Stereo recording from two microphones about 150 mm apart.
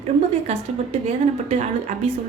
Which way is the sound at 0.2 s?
45° right (ahead or behind).